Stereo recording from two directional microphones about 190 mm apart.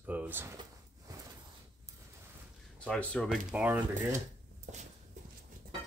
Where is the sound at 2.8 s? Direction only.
5° left (ahead or behind).